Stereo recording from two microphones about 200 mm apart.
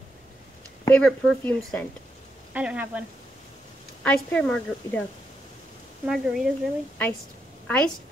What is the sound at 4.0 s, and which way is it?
A woman's voice, 5° left (ahead or behind).